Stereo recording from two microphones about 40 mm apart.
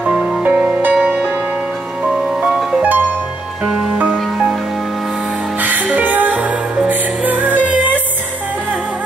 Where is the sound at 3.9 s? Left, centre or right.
Right.